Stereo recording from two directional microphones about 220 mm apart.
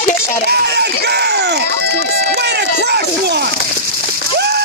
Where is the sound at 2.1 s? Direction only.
50° right (ahead or behind).